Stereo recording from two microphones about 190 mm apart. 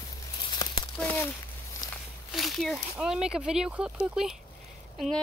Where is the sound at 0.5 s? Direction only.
25° left (ahead or behind).